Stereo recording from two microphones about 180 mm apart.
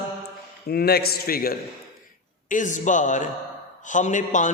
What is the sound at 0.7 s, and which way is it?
A man's voice, 60° left (ahead or behind).